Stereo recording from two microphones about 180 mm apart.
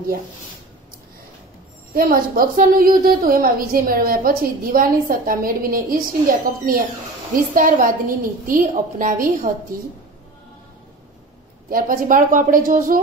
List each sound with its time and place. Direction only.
2.0 s a woman's voice: 55° right (ahead or behind)
11.7 s a woman's voice: 50° right (ahead or behind)